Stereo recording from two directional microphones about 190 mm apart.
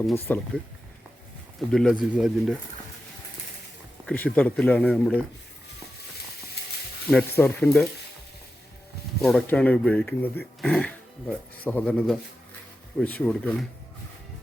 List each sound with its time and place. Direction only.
0.0 s speech: 5° left (ahead or behind)
1.7 s speech: centre (ahead or behind)
4.0 s speech: 5° left (ahead or behind)
7.1 s speech: 5° left (ahead or behind)
9.2 s speech: 5° left (ahead or behind)